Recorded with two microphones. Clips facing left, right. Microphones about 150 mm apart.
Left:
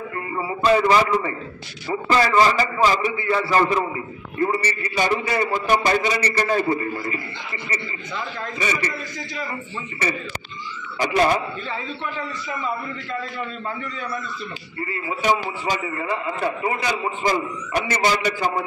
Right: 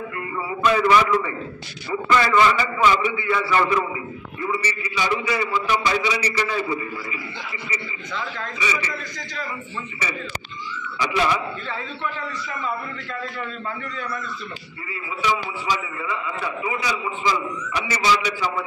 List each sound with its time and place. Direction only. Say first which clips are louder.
0.5 s a man's voice: left 1 dB; 30° left (ahead or behind)
4.4 s a man's voice: left 5 dB; 50° left (ahead or behind)
8.5 s a man's voice: left 2 dB; 50° left (ahead or behind)
11.0 s a man's voice: left 3 dB; 45° left (ahead or behind)
14.9 s a man's voice: left 3 dB; 50° left (ahead or behind)